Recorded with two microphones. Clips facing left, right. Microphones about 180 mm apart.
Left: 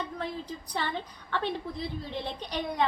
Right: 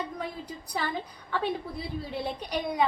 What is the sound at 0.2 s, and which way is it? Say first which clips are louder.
A woman's voice: left 1 dB; 10° right (ahead or behind).